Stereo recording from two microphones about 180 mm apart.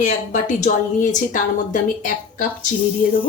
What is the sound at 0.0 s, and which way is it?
A woman's voice, 45° left (ahead or behind).